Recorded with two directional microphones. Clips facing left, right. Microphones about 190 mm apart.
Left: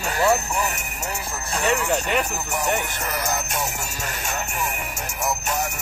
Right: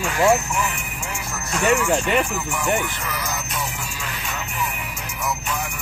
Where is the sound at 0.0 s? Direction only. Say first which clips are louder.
Right 2 dB; 40° left (ahead or behind).